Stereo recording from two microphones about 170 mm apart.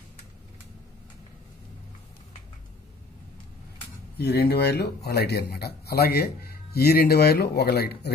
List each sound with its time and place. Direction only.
4.2 s a man's voice: 75° left (ahead or behind)